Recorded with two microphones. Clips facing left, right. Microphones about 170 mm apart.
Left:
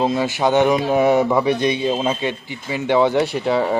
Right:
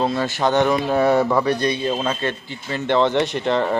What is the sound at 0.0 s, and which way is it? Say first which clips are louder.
Speech: left 2 dB; 15° left (ahead or behind).